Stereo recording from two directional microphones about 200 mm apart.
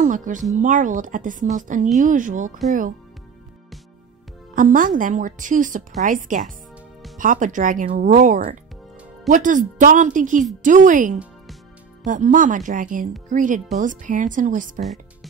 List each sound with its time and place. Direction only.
0.0 s a woman's voice: 40° right (ahead or behind)
4.6 s a woman's voice: 40° right (ahead or behind)